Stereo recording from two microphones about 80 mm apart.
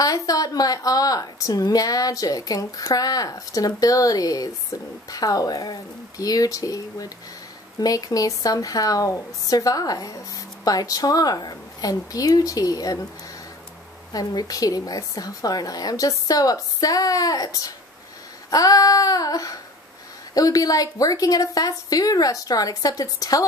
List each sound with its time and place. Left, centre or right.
0.0 s speech: left
14.1 s speech: left